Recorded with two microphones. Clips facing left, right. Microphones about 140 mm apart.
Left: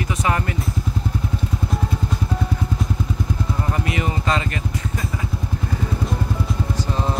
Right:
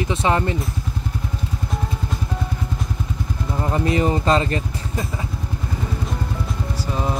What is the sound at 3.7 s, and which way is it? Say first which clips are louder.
Speech: right 8 dB; 30° right (ahead or behind).